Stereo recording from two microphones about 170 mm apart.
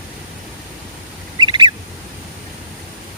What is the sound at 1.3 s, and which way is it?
Bird, 25° right (ahead or behind).